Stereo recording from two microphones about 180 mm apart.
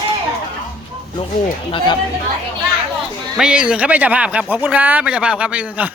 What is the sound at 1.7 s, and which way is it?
Speech, 30° left (ahead or behind).